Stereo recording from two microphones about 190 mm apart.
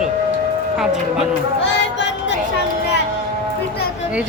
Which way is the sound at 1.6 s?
65° left (ahead or behind).